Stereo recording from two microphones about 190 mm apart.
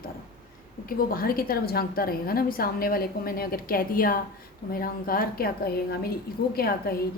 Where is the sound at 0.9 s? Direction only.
50° left (ahead or behind).